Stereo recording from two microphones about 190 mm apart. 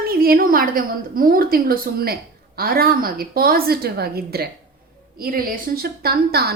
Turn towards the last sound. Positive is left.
turn(degrees=-55)  # may be behind; listen again after turning